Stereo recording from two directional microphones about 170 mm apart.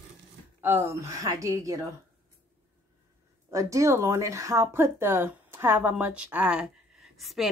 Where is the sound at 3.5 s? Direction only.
20° right (ahead or behind).